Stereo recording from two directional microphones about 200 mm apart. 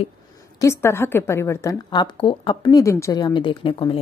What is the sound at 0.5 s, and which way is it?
A woman's voice, 15° left (ahead or behind).